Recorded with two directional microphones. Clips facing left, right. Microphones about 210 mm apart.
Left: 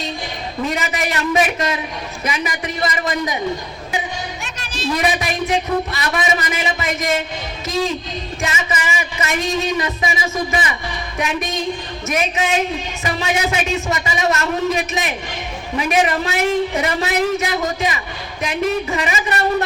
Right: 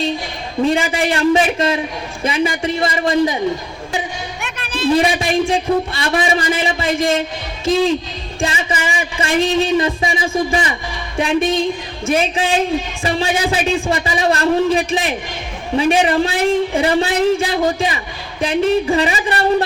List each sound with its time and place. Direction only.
0.6 s a man's voice: 30° right (ahead or behind)
4.4 s music: 55° right (ahead or behind)
4.9 s a man's voice: 30° right (ahead or behind)
8.4 s a man's voice: 30° right (ahead or behind)